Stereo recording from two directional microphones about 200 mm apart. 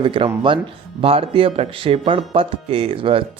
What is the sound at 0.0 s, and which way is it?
Speech, 25° right (ahead or behind).